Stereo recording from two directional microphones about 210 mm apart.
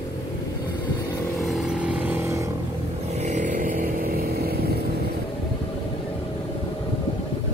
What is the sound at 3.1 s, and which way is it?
Vehicle, 35° right (ahead or behind).